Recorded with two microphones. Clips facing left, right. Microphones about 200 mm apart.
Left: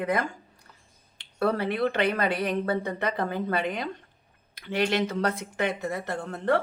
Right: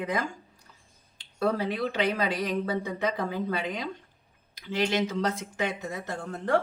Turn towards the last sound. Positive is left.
turn(degrees=60)  # may be behind; listen again after turning